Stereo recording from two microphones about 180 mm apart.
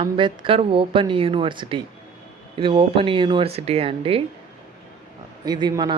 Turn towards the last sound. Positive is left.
turn(degrees=-25)  # may be behind; listen again after turning